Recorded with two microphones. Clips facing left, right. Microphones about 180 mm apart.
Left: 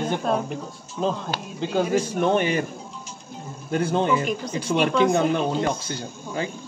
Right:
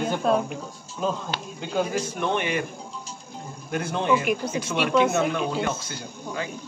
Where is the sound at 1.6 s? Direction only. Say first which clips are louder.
Left 4 dB; 35° left (ahead or behind).